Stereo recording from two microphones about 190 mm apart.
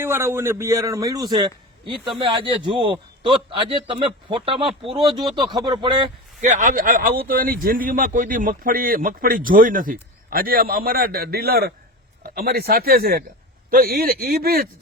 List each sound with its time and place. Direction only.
0.0 s a man's voice: 15° right (ahead or behind)
6.4 s speech: 40° right (ahead or behind)